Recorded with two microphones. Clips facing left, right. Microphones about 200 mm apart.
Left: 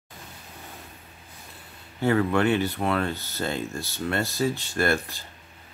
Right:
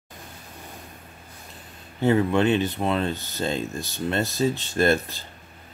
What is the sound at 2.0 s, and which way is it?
Speech, 20° right (ahead or behind).